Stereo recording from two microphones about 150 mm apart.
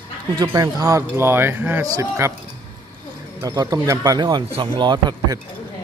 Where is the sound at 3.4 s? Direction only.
25° right (ahead or behind).